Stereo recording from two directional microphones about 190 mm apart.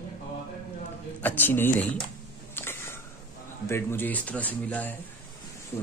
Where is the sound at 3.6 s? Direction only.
10° left (ahead or behind).